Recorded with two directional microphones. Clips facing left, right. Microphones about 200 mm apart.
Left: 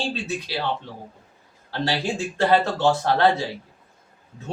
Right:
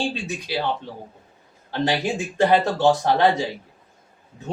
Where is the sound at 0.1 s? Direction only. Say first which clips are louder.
Even; 15° right (ahead or behind).